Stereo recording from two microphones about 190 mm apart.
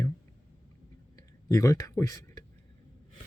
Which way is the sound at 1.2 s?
20° left (ahead or behind).